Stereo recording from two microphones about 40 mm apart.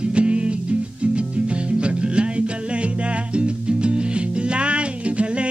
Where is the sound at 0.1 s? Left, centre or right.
Right.